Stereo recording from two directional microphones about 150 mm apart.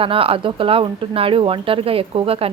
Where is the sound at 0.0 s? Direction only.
40° right (ahead or behind).